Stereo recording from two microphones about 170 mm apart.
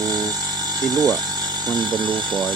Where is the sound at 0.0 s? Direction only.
20° right (ahead or behind).